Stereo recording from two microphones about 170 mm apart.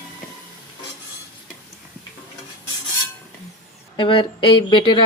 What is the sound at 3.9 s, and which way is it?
Speech, 30° left (ahead or behind).